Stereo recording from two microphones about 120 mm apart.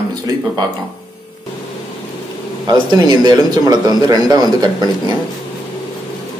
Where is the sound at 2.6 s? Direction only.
35° right (ahead or behind).